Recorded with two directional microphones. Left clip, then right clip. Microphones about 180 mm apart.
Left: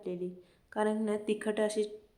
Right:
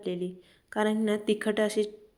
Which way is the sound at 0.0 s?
25° right (ahead or behind).